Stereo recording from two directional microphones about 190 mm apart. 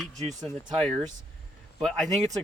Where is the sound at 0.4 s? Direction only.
Centre (ahead or behind).